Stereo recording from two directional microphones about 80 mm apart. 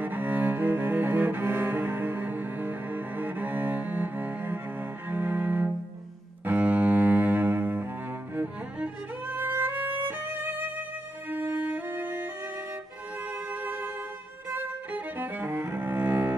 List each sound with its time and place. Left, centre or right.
0.0 s cello: right
8.7 s violin: centre
11.2 s music: right
13.3 s music: right
14.5 s cello: right